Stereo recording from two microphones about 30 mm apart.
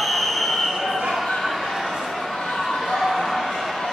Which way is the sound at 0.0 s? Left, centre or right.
Centre.